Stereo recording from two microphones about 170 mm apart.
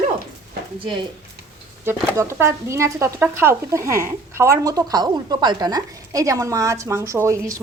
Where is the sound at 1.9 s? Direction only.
15° right (ahead or behind).